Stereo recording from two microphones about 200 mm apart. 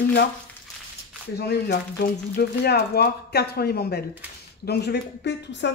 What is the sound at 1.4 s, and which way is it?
Speech, 55° left (ahead or behind).